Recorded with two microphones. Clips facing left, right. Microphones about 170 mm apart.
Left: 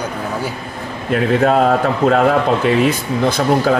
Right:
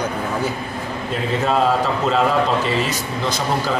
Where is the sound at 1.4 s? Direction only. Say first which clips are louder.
Left 2 dB; 55° left (ahead or behind).